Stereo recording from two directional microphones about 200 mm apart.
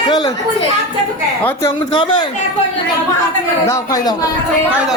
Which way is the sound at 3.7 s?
20° left (ahead or behind).